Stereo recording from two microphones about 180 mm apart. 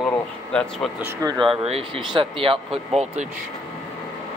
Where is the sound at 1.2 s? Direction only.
25° right (ahead or behind).